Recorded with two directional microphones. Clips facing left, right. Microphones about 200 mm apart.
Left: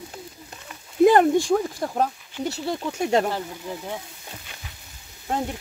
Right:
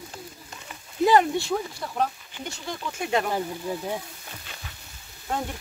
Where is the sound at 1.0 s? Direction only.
50° left (ahead or behind).